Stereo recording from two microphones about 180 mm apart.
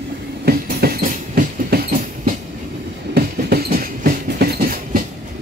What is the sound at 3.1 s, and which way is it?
Train, 60° right (ahead or behind).